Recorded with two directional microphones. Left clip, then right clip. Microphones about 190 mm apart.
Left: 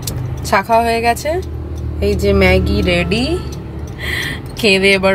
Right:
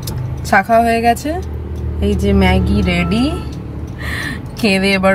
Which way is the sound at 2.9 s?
10° right (ahead or behind).